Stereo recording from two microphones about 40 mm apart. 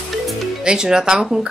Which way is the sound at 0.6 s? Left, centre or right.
Centre.